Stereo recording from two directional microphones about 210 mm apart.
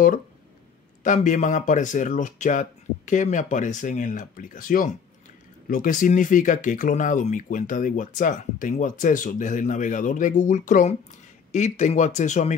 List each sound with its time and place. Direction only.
1.0 s speech: 35° left (ahead or behind)